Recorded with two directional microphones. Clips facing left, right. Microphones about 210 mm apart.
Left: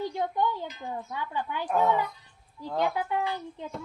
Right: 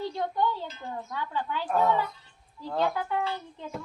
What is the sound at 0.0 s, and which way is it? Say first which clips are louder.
Speech: even; 15° left (ahead or behind).